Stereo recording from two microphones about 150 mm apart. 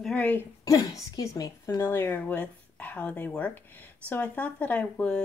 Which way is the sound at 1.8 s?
15° left (ahead or behind).